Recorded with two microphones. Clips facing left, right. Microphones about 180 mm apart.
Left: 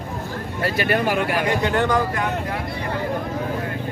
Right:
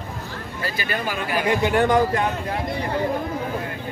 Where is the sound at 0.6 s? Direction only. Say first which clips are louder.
Left 7 dB; 65° left (ahead or behind).